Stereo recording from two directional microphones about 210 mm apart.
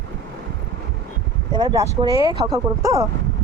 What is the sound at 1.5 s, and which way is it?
Speech, 20° right (ahead or behind).